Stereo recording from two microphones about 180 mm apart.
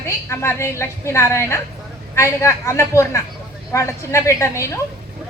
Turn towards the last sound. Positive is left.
turn(degrees=15)  # may be behind; listen again after turning